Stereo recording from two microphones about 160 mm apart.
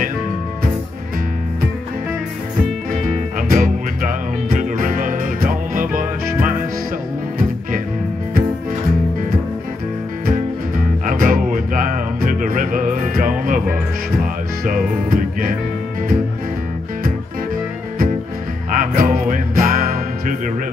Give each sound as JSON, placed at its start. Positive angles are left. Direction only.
{"t": 2.9, "sound": "music", "side_deg": -60}
{"t": 11.1, "sound": "music", "side_deg": -60}
{"t": 14.6, "sound": "music", "side_deg": -60}
{"t": 18.7, "sound": "music", "side_deg": -60}